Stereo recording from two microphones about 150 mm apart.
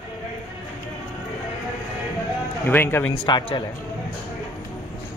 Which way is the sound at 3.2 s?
30° left (ahead or behind).